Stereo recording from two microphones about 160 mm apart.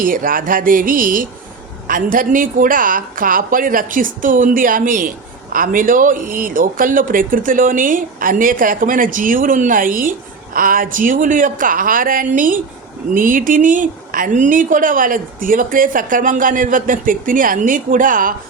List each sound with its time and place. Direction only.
0.0 s a woman's voice: 60° right (ahead or behind)